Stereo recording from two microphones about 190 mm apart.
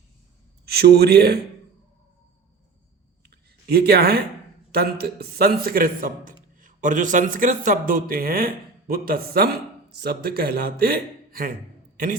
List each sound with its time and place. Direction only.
0.6 s speech: 55° right (ahead or behind)
3.2 s a sound: 55° right (ahead or behind)
4.7 s a man's voice: 55° right (ahead or behind)